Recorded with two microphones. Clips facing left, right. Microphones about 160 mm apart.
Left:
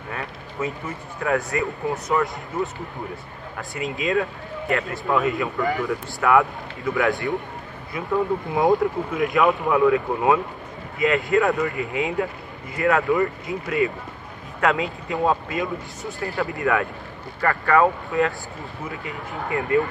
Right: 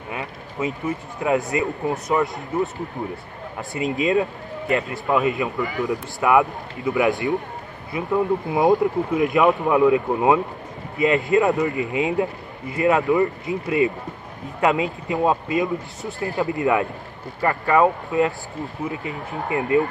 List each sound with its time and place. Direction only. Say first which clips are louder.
0.1 s speech: right 2 dB; 20° right (ahead or behind)
3.5 s speech: right 5 dB; 20° right (ahead or behind)